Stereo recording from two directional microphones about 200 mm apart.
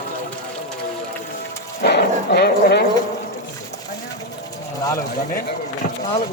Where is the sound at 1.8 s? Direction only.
55° left (ahead or behind).